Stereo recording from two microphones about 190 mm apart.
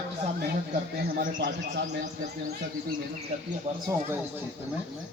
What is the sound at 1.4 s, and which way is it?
Speech, 65° right (ahead or behind).